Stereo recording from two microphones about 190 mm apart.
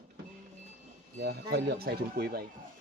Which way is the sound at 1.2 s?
55° right (ahead or behind).